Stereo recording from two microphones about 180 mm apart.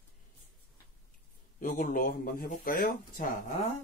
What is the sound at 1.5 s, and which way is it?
Speech, 45° left (ahead or behind).